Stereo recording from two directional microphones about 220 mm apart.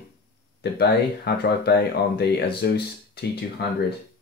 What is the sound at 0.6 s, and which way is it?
Speech, 45° left (ahead or behind).